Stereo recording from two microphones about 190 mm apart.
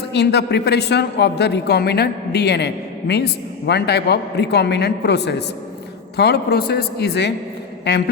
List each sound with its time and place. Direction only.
0.1 s a man's voice: 60° left (ahead or behind)